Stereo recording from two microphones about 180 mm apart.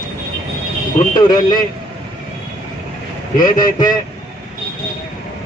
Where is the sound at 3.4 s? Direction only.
25° left (ahead or behind).